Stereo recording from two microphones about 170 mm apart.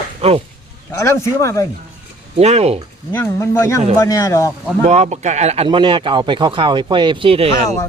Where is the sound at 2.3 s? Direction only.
40° right (ahead or behind).